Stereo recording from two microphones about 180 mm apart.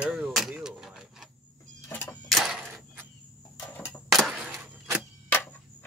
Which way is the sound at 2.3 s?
Centre (ahead or behind).